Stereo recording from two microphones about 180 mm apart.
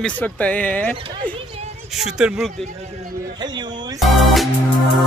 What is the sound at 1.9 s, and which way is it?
Speech, 5° right (ahead or behind).